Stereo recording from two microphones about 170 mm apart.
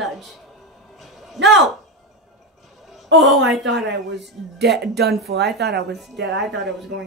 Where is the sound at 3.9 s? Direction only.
85° right.